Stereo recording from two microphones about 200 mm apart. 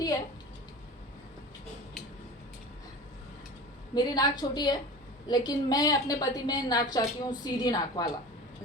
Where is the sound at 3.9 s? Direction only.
20° left (ahead or behind).